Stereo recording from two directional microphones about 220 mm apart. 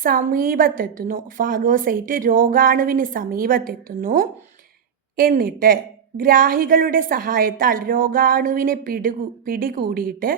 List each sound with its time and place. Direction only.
0.0 s a woman's voice: 40° right (ahead or behind)